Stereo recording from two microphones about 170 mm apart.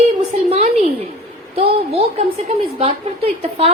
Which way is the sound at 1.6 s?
35° right (ahead or behind).